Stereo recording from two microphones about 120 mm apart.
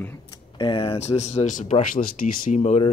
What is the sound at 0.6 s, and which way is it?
Speech, 45° left (ahead or behind).